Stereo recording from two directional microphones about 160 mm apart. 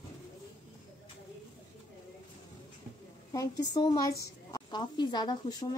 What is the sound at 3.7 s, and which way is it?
Speech, 25° left (ahead or behind).